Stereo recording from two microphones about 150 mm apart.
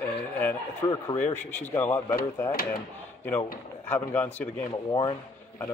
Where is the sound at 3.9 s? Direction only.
15° left (ahead or behind).